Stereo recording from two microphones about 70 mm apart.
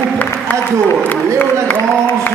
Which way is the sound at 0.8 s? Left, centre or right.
Left.